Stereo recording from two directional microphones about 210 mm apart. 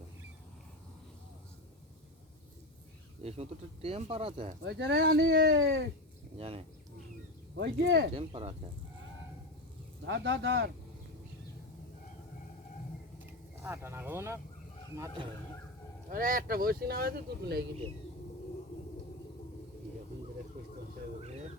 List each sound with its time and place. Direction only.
3.2 s speech: 30° right (ahead or behind)
4.6 s speech: 55° right (ahead or behind)
6.3 s speech: 25° right (ahead or behind)
7.5 s speech: 55° right (ahead or behind)
8.1 s speech: 25° right (ahead or behind)
10.1 s speech: 60° right (ahead or behind)
13.6 s speech: 10° right (ahead or behind)
16.0 s speech: 40° right (ahead or behind)